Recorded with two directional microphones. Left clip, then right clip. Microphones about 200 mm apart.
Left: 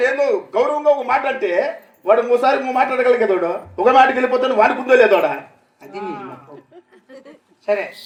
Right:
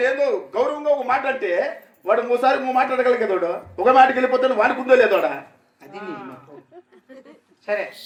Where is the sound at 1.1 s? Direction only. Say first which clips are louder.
Left 3 dB; 30° left (ahead or behind).